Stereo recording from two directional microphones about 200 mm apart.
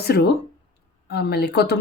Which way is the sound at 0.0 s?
55° left (ahead or behind).